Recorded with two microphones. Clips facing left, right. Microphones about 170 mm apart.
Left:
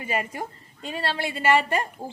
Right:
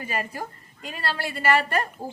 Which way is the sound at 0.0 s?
25° left (ahead or behind).